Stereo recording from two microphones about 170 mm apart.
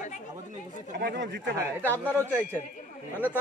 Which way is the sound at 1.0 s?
85° right.